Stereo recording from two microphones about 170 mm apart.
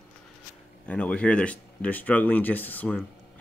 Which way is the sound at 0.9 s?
5° left (ahead or behind).